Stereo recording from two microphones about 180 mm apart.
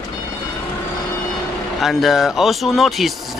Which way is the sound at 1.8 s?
Centre (ahead or behind).